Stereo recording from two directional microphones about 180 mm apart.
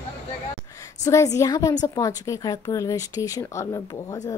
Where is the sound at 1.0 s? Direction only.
20° left (ahead or behind).